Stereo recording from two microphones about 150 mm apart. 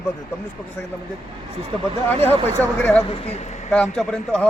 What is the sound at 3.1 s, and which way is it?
Speech, 40° left (ahead or behind).